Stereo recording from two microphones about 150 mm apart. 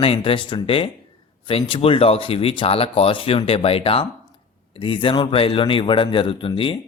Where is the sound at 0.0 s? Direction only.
40° left (ahead or behind).